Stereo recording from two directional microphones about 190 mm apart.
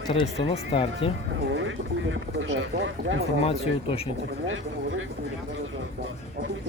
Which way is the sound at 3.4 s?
30° left (ahead or behind).